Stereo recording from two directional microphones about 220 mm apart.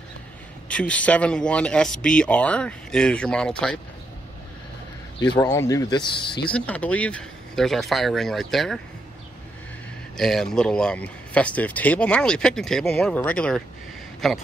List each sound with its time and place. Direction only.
0.7 s speech: 5° left (ahead or behind)
5.2 s speech: 20° left (ahead or behind)
6.4 s speech: 5° left (ahead or behind)
10.1 s speech: centre (ahead or behind)